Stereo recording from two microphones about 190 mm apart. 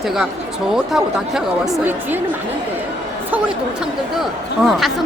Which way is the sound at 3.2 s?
5° right (ahead or behind).